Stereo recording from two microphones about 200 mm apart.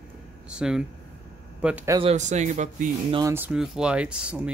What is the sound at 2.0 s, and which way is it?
Speech, 35° right (ahead or behind).